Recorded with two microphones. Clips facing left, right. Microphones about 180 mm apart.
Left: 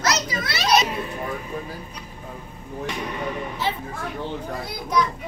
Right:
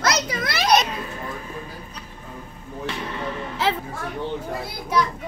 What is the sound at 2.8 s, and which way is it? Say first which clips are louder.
Vehicle: even; 15° left (ahead or behind).